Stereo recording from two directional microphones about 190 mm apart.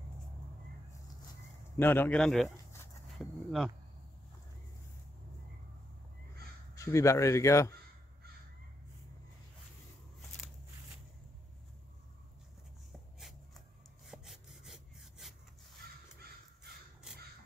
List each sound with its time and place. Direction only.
1.8 s a man's voice: 10° left (ahead or behind)
6.7 s speech: 15° left (ahead or behind)
14.0 s sawing: centre (ahead or behind)